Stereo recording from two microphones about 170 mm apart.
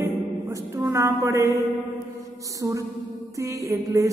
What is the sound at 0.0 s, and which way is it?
Music, 20° right (ahead or behind).